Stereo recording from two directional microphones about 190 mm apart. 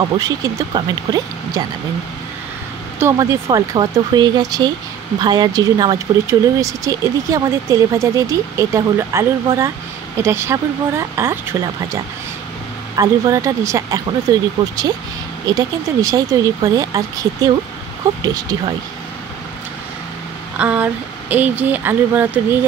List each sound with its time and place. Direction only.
0.2 s speech: 20° right (ahead or behind)
3.0 s speech: 15° right (ahead or behind)
20.5 s speech: 10° right (ahead or behind)